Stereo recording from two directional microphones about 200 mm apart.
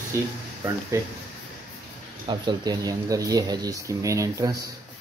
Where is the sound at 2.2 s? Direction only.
20° right (ahead or behind).